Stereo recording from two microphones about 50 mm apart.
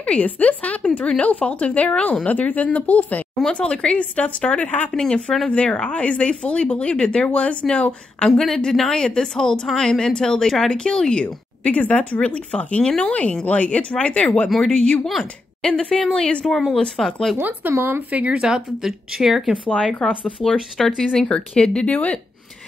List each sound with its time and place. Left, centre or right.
0.0 s speech: left
3.4 s speech: centre
4.9 s speech: centre
5.5 s speech: left
8.3 s a woman's voice: centre
11.6 s speech: left
17.0 s a woman's voice: centre
17.4 s speech: right
17.7 s speech: right
18.1 s speech: right
18.4 s speech: centre
20.0 s speech: centre
21.9 s speech: left